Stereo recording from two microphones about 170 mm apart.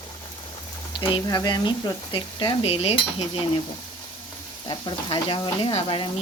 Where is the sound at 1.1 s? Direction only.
25° left (ahead or behind).